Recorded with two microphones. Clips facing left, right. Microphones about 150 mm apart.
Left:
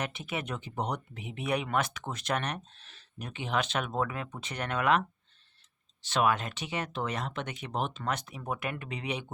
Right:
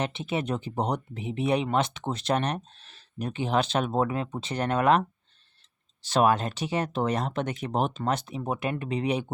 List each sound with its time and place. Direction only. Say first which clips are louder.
0.0 s speech: right 6 dB; 30° right (ahead or behind)